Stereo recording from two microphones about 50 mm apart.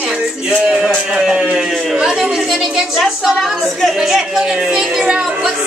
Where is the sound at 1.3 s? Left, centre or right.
Centre.